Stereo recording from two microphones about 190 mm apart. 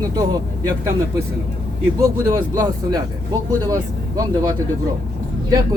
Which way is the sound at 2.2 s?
20° right (ahead or behind).